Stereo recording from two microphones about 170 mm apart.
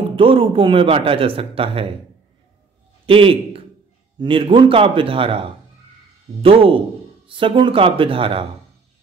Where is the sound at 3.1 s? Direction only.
30° right (ahead or behind).